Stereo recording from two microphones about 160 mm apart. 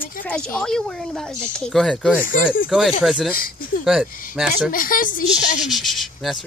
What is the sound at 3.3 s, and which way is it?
Speech, 65° left (ahead or behind).